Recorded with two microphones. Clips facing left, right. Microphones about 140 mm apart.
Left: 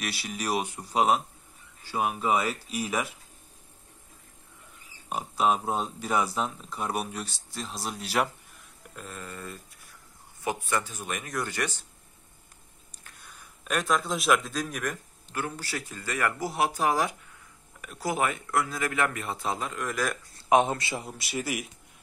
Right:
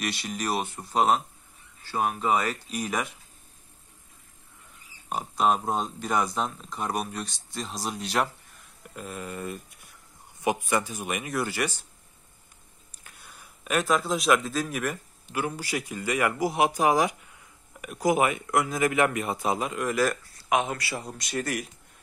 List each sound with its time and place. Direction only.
0.0 s speech: 5° left (ahead or behind)
5.1 s speech: 5° left (ahead or behind)
8.9 s speech: 10° right (ahead or behind)
13.7 s speech: centre (ahead or behind)
20.3 s speech: 30° left (ahead or behind)
21.0 s speech: 5° left (ahead or behind)